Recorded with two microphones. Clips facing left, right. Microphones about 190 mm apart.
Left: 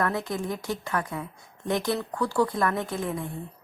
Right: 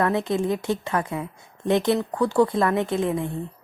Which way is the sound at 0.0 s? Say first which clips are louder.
Right 6 dB; 25° right (ahead or behind).